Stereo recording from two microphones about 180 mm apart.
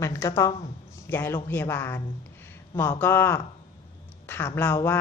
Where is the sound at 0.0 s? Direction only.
15° left (ahead or behind).